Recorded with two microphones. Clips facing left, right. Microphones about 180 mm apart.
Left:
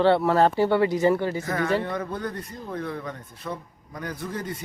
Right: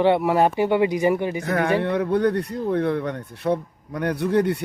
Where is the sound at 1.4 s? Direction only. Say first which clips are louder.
Right 4 dB; 65° right (ahead or behind).